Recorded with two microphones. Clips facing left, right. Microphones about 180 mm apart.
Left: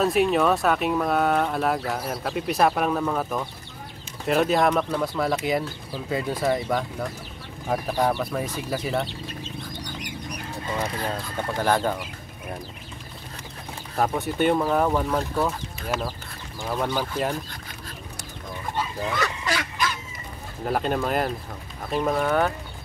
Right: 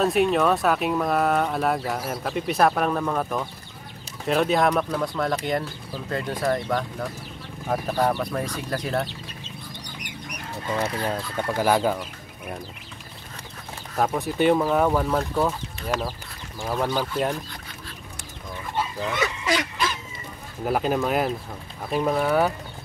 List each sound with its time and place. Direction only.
0.0 s speech: centre (ahead or behind)
10.8 s speech: 10° right (ahead or behind)
13.9 s speech: centre (ahead or behind)
19.2 s goose: 20° right (ahead or behind)
20.6 s speech: 5° right (ahead or behind)